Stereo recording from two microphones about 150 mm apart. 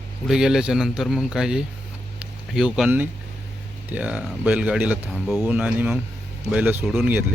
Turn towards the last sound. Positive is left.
turn(degrees=-10)  # may be behind; listen again after turning